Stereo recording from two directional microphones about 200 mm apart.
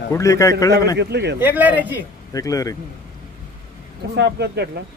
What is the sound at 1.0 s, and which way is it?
Speech, 55° right (ahead or behind).